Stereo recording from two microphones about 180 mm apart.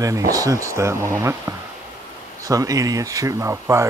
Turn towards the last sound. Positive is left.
turn(degrees=-15)  # may be behind; listen again after turning